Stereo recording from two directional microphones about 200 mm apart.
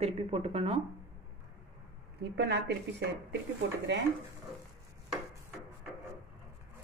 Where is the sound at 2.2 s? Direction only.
55° right (ahead or behind).